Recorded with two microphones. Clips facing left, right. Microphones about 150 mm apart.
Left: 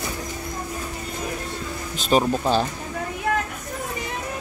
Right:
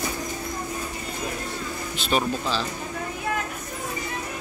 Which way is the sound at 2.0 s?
40° left (ahead or behind).